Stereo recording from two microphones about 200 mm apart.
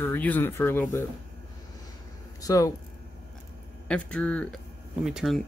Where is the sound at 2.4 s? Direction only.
15° left (ahead or behind).